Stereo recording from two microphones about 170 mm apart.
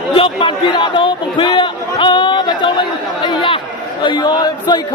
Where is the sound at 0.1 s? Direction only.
30° left (ahead or behind).